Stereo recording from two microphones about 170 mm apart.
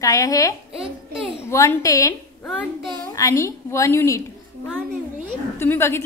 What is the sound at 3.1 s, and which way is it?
A woman's voice, 15° left (ahead or behind).